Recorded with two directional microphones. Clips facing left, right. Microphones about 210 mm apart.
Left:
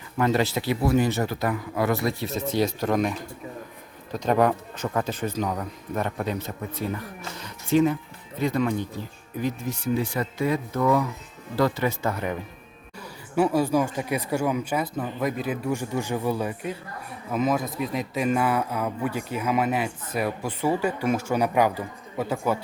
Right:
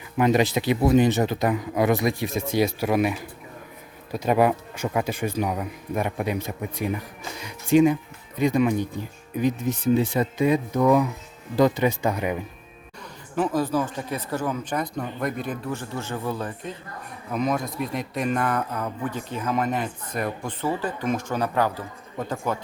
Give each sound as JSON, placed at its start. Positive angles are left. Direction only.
{"t": 0.2, "sound": "speech", "side_deg": -15}
{"t": 13.3, "sound": "a man's voice", "side_deg": 10}